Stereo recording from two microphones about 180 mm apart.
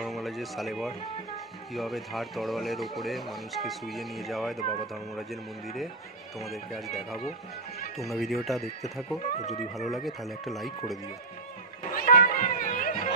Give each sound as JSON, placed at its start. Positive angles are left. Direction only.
{"t": 0.0, "sound": "a sound", "side_deg": 0}
{"t": 1.7, "sound": "speech", "side_deg": 0}
{"t": 6.4, "sound": "speech", "side_deg": 0}
{"t": 11.9, "sound": "music", "side_deg": 50}